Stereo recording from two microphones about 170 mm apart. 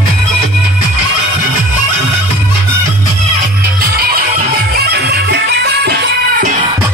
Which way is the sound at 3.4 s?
60° right (ahead or behind).